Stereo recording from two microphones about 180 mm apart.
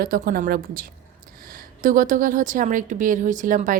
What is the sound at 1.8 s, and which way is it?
A woman's voice, 45° right (ahead or behind).